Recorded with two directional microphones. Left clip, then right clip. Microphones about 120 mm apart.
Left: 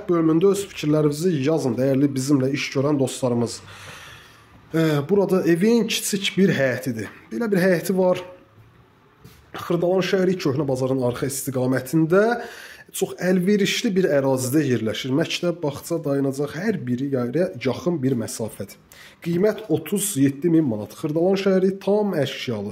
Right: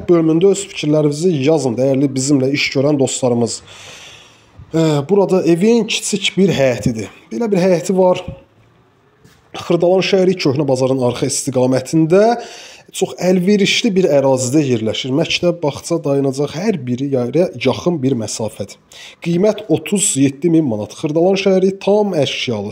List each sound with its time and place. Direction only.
0.2 s speech: 20° right (ahead or behind)
4.7 s speech: 25° right (ahead or behind)
9.5 s a man's voice: 35° right (ahead or behind)